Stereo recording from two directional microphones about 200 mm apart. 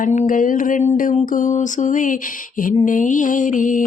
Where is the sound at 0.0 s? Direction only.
40° left (ahead or behind).